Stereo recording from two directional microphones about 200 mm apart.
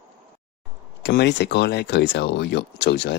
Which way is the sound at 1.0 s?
60° left (ahead or behind).